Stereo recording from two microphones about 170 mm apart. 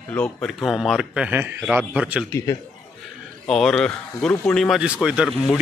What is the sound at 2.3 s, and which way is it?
Speech, 20° left (ahead or behind).